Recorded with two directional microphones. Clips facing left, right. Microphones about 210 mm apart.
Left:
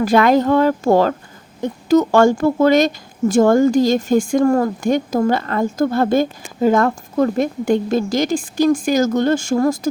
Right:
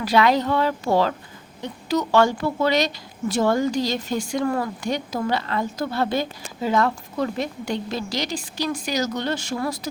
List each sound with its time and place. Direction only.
0.0 s a woman's voice: 50° left (ahead or behind)